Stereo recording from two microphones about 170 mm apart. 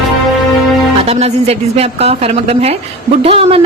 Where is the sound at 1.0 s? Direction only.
35° right (ahead or behind).